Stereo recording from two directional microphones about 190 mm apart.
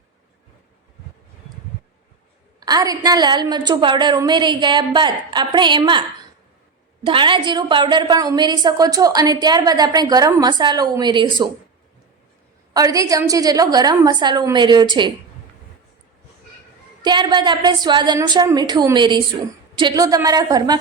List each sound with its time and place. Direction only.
2.6 s a woman's voice: 20° right (ahead or behind)
7.0 s a woman's voice: 25° right (ahead or behind)
12.7 s a woman's voice: 20° right (ahead or behind)
17.0 s a woman's voice: 25° right (ahead or behind)